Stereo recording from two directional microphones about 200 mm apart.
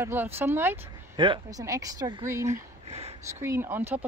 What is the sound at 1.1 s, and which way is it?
Speech, 25° right (ahead or behind).